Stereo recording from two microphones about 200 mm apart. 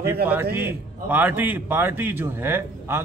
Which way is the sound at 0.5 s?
10° right (ahead or behind).